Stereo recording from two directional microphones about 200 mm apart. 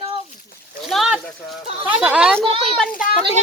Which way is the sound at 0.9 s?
Centre (ahead or behind).